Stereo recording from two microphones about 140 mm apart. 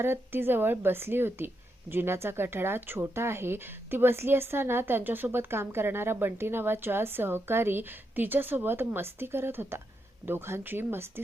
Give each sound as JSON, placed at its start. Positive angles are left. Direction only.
{"t": 0.0, "sound": "speech", "side_deg": -15}